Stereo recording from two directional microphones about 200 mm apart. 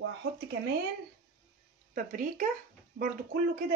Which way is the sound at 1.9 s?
45° right (ahead or behind).